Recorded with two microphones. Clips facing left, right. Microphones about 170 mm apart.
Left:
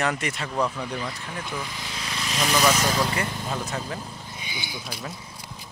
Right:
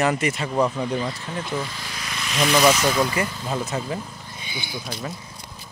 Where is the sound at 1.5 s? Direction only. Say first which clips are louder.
Right 4 dB; 15° left (ahead or behind); by 2.4 s 30° left (ahead or behind).